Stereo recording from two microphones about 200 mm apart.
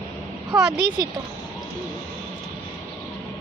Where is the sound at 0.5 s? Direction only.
5° right (ahead or behind).